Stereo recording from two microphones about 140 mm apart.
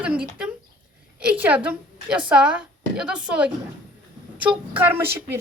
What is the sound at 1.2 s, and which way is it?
A woman's voice, 10° right (ahead or behind).